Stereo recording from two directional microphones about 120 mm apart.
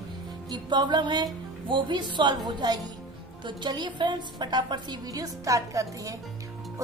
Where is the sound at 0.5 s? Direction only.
40° right (ahead or behind).